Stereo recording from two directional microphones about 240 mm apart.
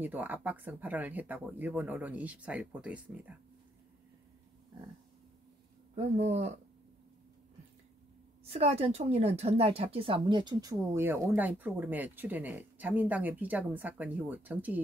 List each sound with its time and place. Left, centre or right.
0.0 s a woman's voice: centre
5.9 s speech: right
8.5 s a woman's voice: right; by 14.8 s centre